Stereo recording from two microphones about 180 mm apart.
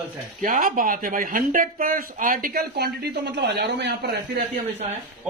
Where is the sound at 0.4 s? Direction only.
50° right (ahead or behind); by 4.2 s 65° right (ahead or behind).